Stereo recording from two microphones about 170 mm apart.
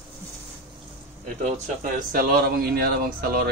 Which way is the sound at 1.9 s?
60° right (ahead or behind).